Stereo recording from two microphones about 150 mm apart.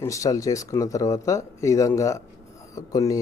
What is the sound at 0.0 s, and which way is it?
Speech, 20° left (ahead or behind).